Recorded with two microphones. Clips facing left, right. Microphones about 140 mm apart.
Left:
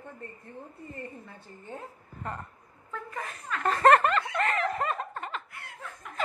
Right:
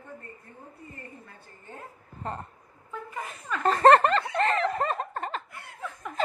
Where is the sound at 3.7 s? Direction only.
30° right (ahead or behind).